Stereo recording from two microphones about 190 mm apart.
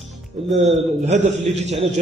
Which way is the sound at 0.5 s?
35° right (ahead or behind).